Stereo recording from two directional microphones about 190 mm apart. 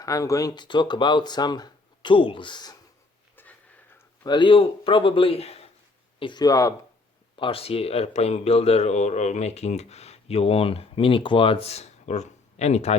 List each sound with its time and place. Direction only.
0.0 s speech: 15° left (ahead or behind)
3.9 s speech: 20° left (ahead or behind)
7.3 s speech: 30° left (ahead or behind)